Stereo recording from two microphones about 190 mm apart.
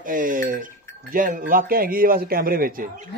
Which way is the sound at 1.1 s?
45° right (ahead or behind).